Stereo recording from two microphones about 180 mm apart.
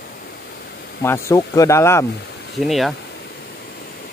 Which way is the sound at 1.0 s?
15° left (ahead or behind).